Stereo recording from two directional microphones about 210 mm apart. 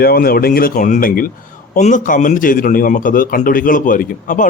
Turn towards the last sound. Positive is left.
turn(degrees=40)  # may be behind; listen again after turning